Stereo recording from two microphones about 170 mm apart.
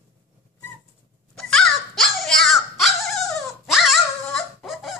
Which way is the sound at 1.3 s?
5° left (ahead or behind).